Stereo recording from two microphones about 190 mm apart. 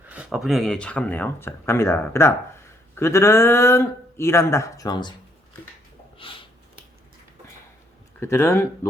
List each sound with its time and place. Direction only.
0.1 s speech: 5° right (ahead or behind); by 5.1 s 20° left (ahead or behind)
6.1 s a sound: 25° left (ahead or behind)
8.2 s speech: 15° left (ahead or behind)